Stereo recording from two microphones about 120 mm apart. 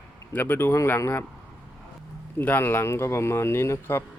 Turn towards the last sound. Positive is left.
turn(degrees=20)  # may be behind; listen again after turning